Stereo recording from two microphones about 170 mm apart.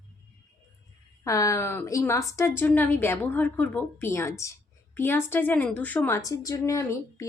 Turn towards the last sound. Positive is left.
turn(degrees=20)  # may be behind; listen again after turning